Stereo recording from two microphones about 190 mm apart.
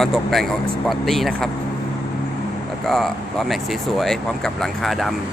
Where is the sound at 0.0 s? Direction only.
Centre (ahead or behind).